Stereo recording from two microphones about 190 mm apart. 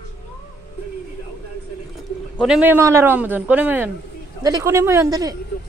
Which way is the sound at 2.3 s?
5° right (ahead or behind).